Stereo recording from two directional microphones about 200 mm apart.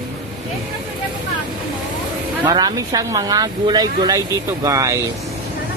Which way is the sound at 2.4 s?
20° right (ahead or behind).